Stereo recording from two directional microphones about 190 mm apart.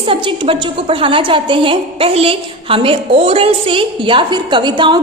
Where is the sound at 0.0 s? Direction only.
30° right (ahead or behind).